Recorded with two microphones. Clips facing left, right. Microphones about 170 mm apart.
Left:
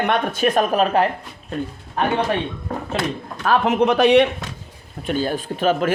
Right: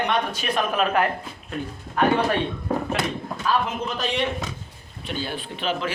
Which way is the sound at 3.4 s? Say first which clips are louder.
Left 8 dB; 65° left (ahead or behind).